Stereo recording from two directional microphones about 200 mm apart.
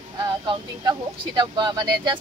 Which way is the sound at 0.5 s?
20° right (ahead or behind).